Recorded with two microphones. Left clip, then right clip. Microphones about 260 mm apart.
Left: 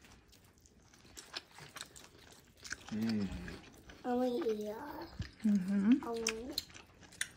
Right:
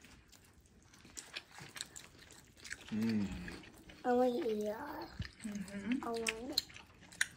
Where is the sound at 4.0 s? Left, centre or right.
Centre.